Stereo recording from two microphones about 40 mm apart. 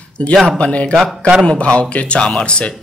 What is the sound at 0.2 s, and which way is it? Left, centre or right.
Speech, left.